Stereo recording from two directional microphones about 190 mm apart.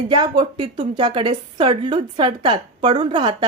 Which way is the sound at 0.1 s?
25° right (ahead or behind).